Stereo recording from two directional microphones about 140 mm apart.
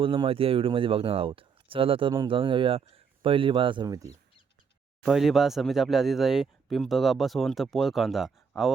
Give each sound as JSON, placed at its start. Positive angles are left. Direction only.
{"t": 0.0, "sound": "speech", "side_deg": -40}
{"t": 3.8, "sound": "speech", "side_deg": -25}
{"t": 5.0, "sound": "speech", "side_deg": -5}